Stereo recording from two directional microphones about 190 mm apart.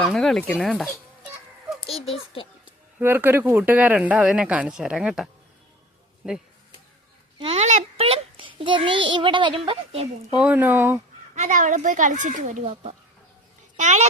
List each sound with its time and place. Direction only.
0.0 s speech: centre (ahead or behind)
2.0 s a child's voice: 30° left (ahead or behind)
3.0 s speech: 10° right (ahead or behind)
7.3 s a child's voice: 30° right (ahead or behind)
10.3 s speech: 10° right (ahead or behind)
11.3 s speech: 40° right (ahead or behind)